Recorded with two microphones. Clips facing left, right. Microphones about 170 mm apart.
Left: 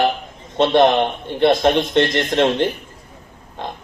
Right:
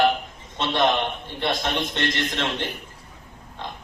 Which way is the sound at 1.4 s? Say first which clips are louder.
Left 11 dB; 60° left (ahead or behind).